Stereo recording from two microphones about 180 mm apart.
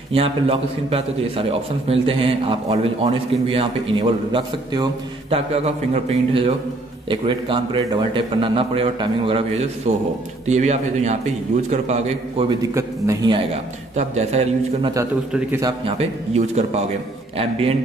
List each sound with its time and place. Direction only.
0.1 s a man's voice: 30° right (ahead or behind)
6.0 s a man's voice: 30° right (ahead or behind)
9.9 s a man's voice: 40° right (ahead or behind)
12.4 s a man's voice: 15° right (ahead or behind)
13.9 s a man's voice: 40° right (ahead or behind)